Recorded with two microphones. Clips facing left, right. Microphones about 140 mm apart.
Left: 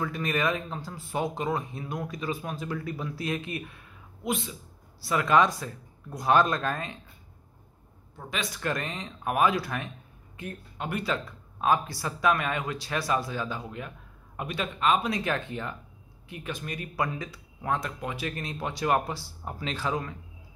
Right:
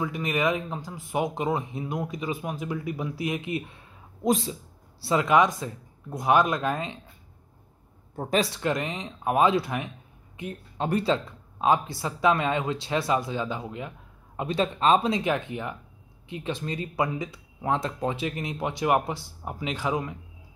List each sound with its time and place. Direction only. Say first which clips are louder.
0.0 s speech: right 2 dB; 20° right (ahead or behind)
4.2 s speech: right 7 dB; 35° right (ahead or behind)
5.0 s speech: right 2 dB; 20° right (ahead or behind)
8.2 s speech: right 9 dB; 40° right (ahead or behind)
8.5 s speech: right 4 dB; 20° right (ahead or behind)
10.8 s speech: right 6 dB; 30° right (ahead or behind); by 20.2 s 15° right (ahead or behind)